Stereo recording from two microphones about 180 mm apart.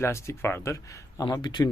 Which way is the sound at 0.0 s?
15° left (ahead or behind).